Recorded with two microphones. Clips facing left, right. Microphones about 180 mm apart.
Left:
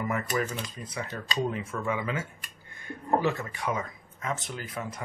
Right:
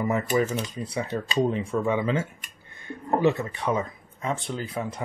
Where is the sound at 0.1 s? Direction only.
20° right (ahead or behind).